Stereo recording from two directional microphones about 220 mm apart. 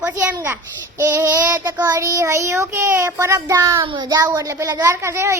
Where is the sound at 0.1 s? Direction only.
10° right (ahead or behind).